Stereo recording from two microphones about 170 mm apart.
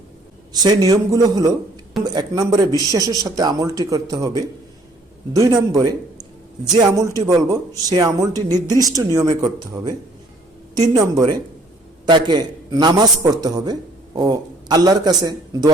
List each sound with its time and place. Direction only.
0.6 s a man's voice: 25° right (ahead or behind)